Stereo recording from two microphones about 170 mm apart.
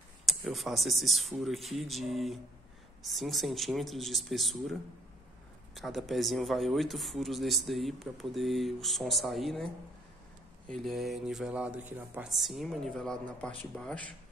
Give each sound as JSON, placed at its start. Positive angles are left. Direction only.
{"t": 0.3, "sound": "speech", "side_deg": 0}
{"t": 5.8, "sound": "speech", "side_deg": 0}
{"t": 10.7, "sound": "speech", "side_deg": 0}